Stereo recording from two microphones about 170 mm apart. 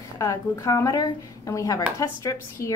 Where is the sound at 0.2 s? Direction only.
20° left (ahead or behind).